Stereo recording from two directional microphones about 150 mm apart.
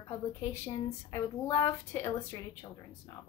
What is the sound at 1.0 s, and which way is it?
A woman's voice, 20° left (ahead or behind).